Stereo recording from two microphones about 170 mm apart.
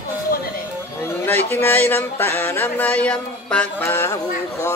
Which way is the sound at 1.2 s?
10° left (ahead or behind).